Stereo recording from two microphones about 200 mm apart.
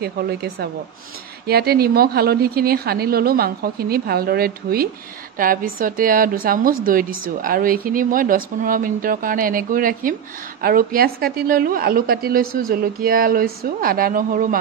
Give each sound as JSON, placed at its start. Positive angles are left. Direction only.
{"t": 0.0, "sound": "a woman's voice", "side_deg": -55}